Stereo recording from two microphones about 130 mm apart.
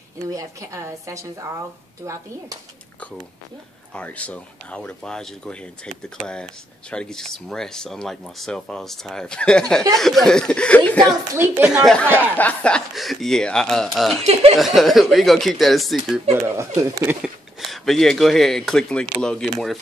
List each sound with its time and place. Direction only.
0.3 s a woman's voice: 25° right (ahead or behind)
3.9 s speech: 10° left (ahead or behind)
11.3 s speech: 15° right (ahead or behind)
11.8 s speech: 5° left (ahead or behind)
14.2 s speech: 50° right (ahead or behind)
14.6 s speech: centre (ahead or behind)
16.3 s a woman's voice: 25° right (ahead or behind)
17.2 s speech: centre (ahead or behind)